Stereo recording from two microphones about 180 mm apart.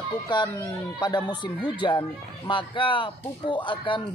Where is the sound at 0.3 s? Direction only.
25° left (ahead or behind).